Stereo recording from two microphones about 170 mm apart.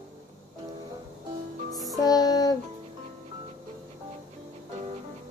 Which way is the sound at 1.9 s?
20° left (ahead or behind).